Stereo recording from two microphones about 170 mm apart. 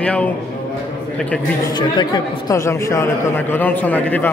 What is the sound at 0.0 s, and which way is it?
Speech, 5° left (ahead or behind).